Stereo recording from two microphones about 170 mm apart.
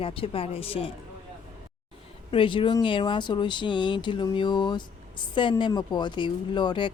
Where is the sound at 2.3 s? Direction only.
30° left (ahead or behind).